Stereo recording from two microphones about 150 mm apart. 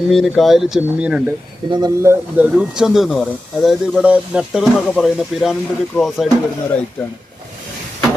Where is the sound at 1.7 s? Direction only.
25° right (ahead or behind).